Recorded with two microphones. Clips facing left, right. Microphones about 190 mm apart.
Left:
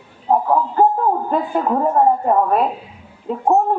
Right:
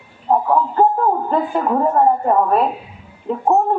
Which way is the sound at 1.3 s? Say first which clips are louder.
Right 1 dB; 15° left (ahead or behind).